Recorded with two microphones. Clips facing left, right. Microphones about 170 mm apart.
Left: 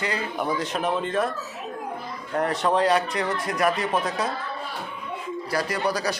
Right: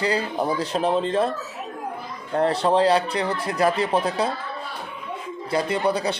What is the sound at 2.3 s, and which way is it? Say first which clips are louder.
Speech: right 3 dB; 30° right (ahead or behind).